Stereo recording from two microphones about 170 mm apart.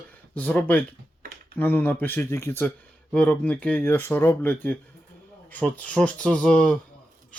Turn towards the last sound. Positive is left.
turn(degrees=5)  # may be behind; listen again after turning